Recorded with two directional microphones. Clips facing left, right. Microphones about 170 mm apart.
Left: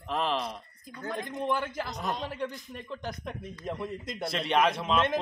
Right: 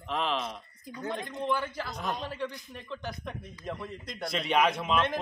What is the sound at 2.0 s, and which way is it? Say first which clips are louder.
Speech: even; centre (ahead or behind).